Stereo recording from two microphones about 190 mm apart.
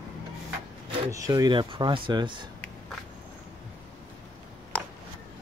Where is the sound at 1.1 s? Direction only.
15° right (ahead or behind).